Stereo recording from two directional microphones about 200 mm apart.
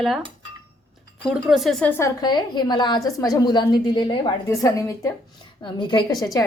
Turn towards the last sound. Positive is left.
turn(degrees=20)  # may be behind; listen again after turning